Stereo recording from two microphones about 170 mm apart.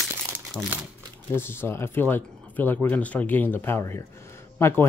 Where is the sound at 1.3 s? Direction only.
15° left (ahead or behind).